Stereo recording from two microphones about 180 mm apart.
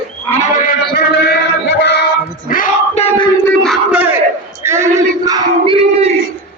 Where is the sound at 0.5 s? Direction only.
45° left (ahead or behind).